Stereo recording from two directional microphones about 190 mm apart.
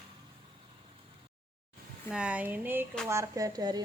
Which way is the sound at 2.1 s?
5° right (ahead or behind).